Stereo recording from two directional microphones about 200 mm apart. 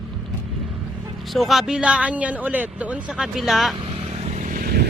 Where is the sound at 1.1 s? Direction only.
Centre (ahead or behind).